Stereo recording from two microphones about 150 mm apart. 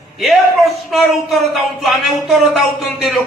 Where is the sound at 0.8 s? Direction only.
Centre (ahead or behind).